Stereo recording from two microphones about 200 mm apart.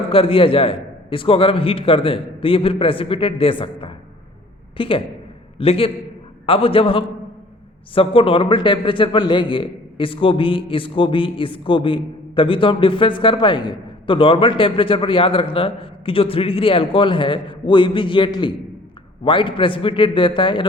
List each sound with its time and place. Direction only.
0.1 s a man's voice: 25° left (ahead or behind)